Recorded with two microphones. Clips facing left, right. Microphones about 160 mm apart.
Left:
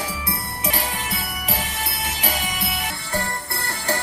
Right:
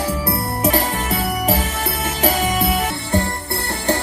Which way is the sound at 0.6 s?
45° right (ahead or behind).